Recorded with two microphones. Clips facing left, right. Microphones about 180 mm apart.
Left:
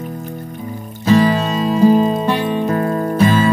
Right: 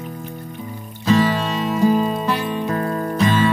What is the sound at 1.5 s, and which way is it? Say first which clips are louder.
Music: left 6 dB; 35° left (ahead or behind).